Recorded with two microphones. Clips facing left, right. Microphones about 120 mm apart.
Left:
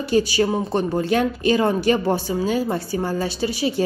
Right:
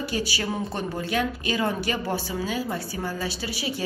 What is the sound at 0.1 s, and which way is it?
A woman's voice, 35° left (ahead or behind).